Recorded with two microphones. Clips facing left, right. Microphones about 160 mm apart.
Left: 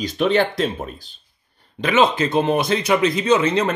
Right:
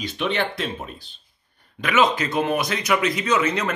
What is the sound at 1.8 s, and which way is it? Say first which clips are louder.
A man's voice: left 3 dB; 30° left (ahead or behind).